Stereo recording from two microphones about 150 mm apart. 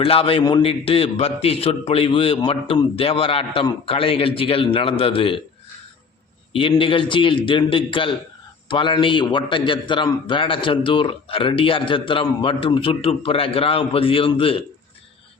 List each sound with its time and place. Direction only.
0.0 s a man's voice: 40° left (ahead or behind)
6.5 s a man's voice: 35° left (ahead or behind)